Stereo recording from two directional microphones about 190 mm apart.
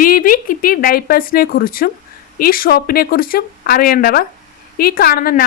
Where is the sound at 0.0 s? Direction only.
50° left (ahead or behind).